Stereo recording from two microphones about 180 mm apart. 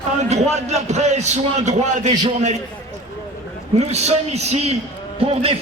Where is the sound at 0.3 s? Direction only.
40° right (ahead or behind).